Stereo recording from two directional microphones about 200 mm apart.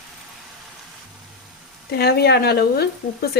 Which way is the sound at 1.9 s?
50° left (ahead or behind).